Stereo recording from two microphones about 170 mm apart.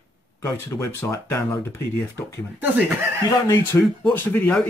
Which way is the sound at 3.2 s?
20° left (ahead or behind).